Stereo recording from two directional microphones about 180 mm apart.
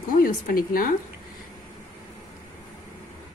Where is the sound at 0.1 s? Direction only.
50° left (ahead or behind).